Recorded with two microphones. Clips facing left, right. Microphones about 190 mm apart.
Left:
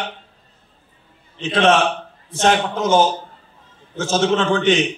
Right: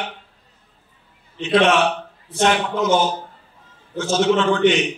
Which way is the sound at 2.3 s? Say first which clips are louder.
Left 1 dB; 45° left (ahead or behind).